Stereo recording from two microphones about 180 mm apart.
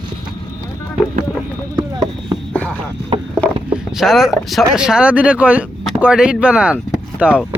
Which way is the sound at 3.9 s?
Centre (ahead or behind).